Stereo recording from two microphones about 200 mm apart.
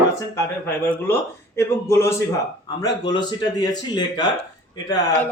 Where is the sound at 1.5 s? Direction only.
10° left (ahead or behind).